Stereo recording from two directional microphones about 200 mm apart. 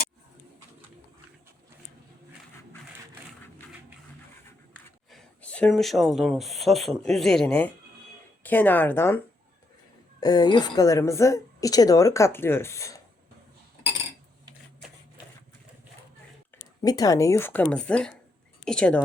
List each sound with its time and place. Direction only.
5.1 s a woman's voice: 5° left (ahead or behind)
16.8 s a woman's voice: 20° left (ahead or behind)